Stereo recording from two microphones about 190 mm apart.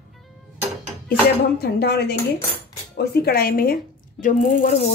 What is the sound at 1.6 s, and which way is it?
A woman's voice, 55° left (ahead or behind).